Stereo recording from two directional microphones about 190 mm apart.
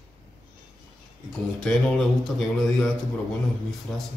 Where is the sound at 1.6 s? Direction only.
5° left (ahead or behind).